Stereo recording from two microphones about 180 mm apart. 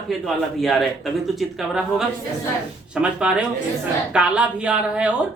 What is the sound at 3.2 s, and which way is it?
Speech, 5° right (ahead or behind).